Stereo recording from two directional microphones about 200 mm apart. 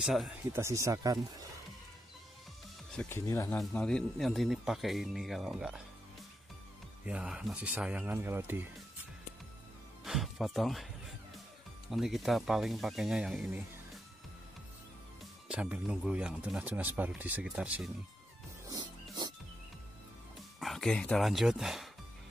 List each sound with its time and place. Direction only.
0.0 s speech: centre (ahead or behind)
0.5 s speech: 15° right (ahead or behind)
3.0 s speech: 10° left (ahead or behind)
7.1 s speech: 5° right (ahead or behind)
10.0 s music: centre (ahead or behind)
11.9 s speech: centre (ahead or behind)
15.4 s speech: 5° right (ahead or behind)
18.7 s music: 20° right (ahead or behind)
20.6 s speech: centre (ahead or behind)